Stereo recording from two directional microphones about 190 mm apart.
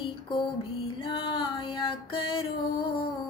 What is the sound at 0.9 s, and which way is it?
Music, 25° left (ahead or behind).